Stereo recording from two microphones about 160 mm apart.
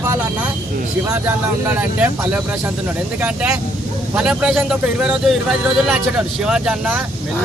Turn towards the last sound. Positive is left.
turn(degrees=-5)  # may be behind; listen again after turning